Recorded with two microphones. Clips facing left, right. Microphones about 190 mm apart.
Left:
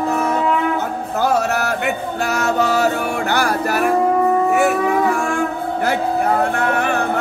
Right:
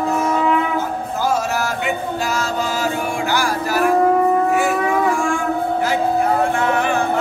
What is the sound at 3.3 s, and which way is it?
Music, 60° left (ahead or behind).